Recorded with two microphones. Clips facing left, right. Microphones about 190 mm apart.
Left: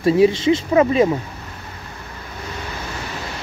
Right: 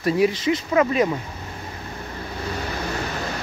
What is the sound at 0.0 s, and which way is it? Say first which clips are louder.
Speech: left 5 dB; 25° left (ahead or behind).